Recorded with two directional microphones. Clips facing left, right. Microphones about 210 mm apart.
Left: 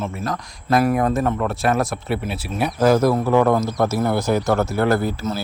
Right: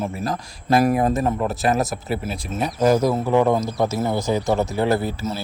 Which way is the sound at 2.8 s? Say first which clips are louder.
Left 2 dB; 15° right (ahead or behind).